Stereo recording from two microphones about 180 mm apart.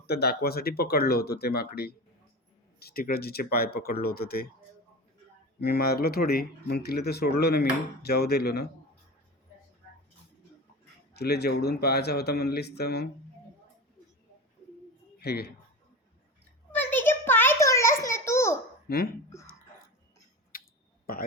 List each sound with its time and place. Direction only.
0.0 s speech: 60° left (ahead or behind)
5.5 s speech: 60° left (ahead or behind)
11.1 s speech: 65° left (ahead or behind)
15.2 s speech: 60° left (ahead or behind)
16.7 s a sound: 10° left (ahead or behind)
18.9 s speech: 60° left (ahead or behind)
20.5 s a sound: 55° left (ahead or behind)
21.1 s speech: 55° left (ahead or behind)